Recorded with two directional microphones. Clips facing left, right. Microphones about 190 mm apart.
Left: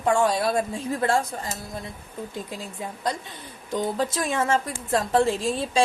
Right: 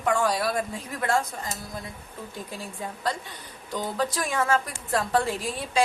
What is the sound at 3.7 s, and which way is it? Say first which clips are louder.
A woman's voice: left 3 dB; 25° left (ahead or behind).